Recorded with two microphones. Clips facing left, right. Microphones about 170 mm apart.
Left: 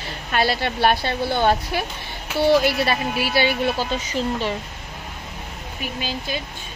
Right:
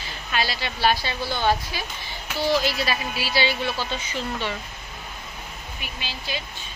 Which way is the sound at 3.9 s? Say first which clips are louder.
Left 6 dB; 40° left (ahead or behind).